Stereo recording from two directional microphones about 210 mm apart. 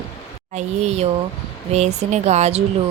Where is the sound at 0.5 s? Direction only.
30° right (ahead or behind).